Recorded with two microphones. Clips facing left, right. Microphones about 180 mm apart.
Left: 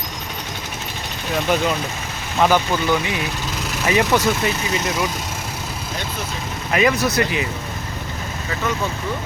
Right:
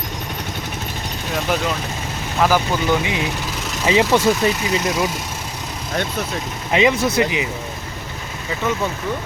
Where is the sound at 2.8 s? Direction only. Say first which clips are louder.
Right 1 dB; 20° right (ahead or behind).